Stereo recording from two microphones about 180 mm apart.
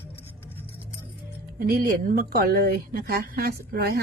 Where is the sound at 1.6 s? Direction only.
55° right (ahead or behind).